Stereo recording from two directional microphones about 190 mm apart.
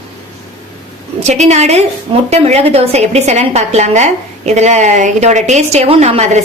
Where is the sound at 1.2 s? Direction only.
35° right (ahead or behind).